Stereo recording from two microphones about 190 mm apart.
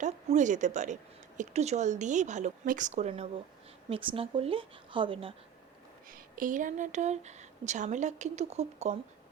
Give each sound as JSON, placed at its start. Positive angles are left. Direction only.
{"t": 0.0, "sound": "speech", "side_deg": -40}
{"t": 6.1, "sound": "speech", "side_deg": -45}